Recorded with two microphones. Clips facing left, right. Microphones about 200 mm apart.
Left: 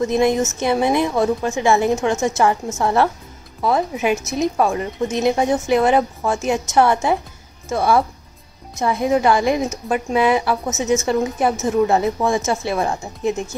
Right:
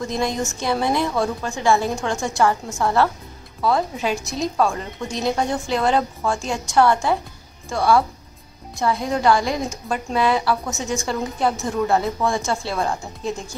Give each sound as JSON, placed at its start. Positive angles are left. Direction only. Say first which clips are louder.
{"t": 0.0, "sound": "a woman's voice", "louder": "left 7 dB", "side_deg": 20}